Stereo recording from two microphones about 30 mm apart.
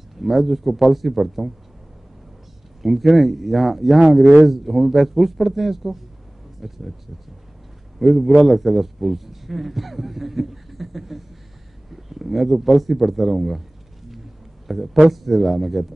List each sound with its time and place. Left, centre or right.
0.2 s a man's voice: centre
2.8 s a man's voice: centre
8.0 s a man's voice: centre
14.7 s a man's voice: centre